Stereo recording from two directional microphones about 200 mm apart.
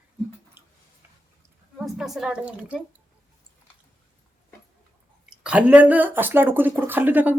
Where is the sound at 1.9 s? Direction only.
Centre (ahead or behind).